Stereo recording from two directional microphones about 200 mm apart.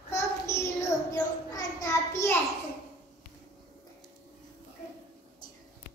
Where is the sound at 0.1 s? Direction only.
15° left (ahead or behind).